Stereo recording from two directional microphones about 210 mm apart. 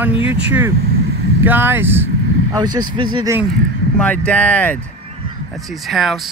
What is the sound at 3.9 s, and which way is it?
Speech, 5° left (ahead or behind).